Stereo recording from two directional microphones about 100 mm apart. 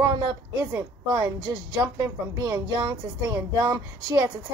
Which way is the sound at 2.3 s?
30° right (ahead or behind).